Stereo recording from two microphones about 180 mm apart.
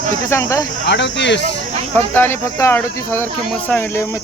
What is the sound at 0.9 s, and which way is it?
Speech, 75° left (ahead or behind).